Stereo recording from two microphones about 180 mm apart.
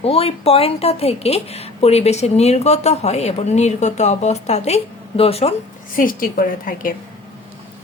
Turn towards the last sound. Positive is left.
turn(degrees=50)  # may be behind; listen again after turning